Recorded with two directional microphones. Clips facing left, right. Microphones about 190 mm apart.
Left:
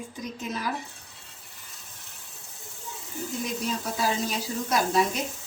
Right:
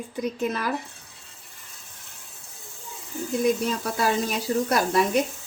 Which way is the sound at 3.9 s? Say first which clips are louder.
Right 3 dB; 60° right (ahead or behind).